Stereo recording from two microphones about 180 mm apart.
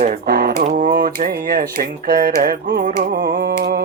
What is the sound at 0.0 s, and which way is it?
Speech, 50° right (ahead or behind).